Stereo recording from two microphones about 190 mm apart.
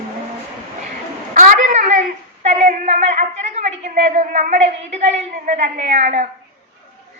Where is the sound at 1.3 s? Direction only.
35° right (ahead or behind).